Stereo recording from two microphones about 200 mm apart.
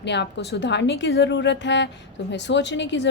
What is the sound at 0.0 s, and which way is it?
A woman's voice, 60° left (ahead or behind).